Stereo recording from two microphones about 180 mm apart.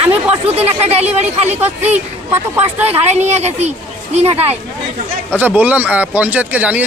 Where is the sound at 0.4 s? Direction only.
35° right (ahead or behind).